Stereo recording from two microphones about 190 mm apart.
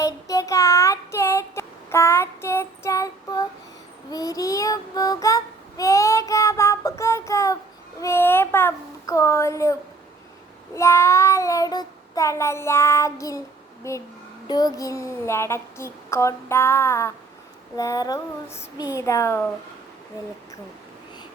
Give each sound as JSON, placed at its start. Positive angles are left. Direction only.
{"t": 0.0, "sound": "child singing", "side_deg": 15}
{"t": 10.8, "sound": "child singing", "side_deg": 15}
{"t": 17.7, "sound": "a sound", "side_deg": 20}
{"t": 18.9, "sound": "child singing", "side_deg": 15}